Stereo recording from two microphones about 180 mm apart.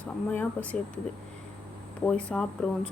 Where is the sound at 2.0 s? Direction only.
5° left (ahead or behind).